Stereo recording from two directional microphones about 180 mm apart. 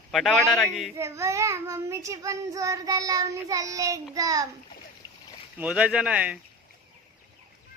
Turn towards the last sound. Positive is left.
turn(degrees=-5)  # may be behind; listen again after turning